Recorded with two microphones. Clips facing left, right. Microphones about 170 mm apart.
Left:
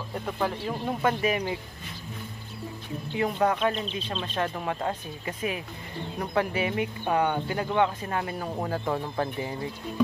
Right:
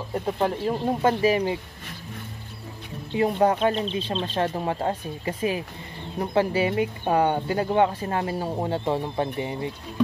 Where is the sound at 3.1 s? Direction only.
30° right (ahead or behind).